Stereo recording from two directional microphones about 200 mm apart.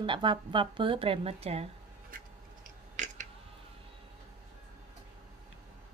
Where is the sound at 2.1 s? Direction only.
45° right (ahead or behind).